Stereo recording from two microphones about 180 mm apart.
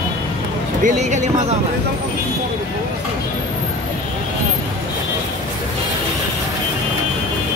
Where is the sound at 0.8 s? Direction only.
40° right (ahead or behind).